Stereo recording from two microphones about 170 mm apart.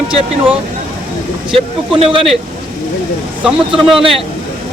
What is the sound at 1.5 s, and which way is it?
Speech, 30° right (ahead or behind).